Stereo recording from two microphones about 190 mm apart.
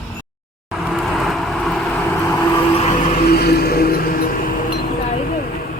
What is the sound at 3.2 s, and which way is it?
Music, 55° left (ahead or behind).